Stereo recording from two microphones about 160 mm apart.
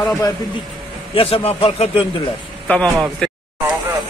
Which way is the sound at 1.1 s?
35° left (ahead or behind).